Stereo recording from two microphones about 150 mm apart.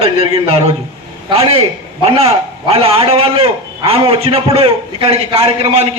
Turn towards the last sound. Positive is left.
turn(degrees=-40)  # may be behind; listen again after turning